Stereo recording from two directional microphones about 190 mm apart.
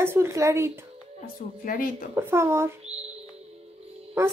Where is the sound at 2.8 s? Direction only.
35° right (ahead or behind).